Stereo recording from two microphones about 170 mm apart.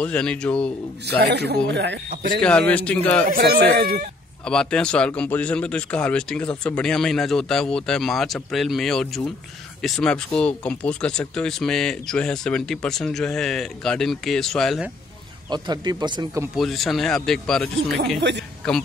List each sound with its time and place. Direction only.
0.0 s a man's voice: 5° left (ahead or behind)
1.0 s a man's voice: 75° right (ahead or behind)
1.7 s speech: 90° right
2.4 s a man's voice: 5° left (ahead or behind)
3.3 s speech: 60° right (ahead or behind)
4.5 s speech: 5° left (ahead or behind)
15.5 s speech: 25° right (ahead or behind)
16.5 s speech: centre (ahead or behind)